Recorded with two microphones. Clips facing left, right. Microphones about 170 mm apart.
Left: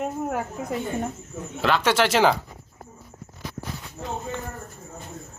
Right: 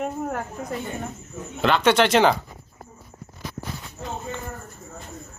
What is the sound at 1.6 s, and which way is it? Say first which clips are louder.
Speech: right 3 dB; 5° left (ahead or behind).